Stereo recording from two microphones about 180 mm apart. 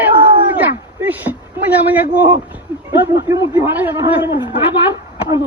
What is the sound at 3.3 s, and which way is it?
Speech, 10° right (ahead or behind).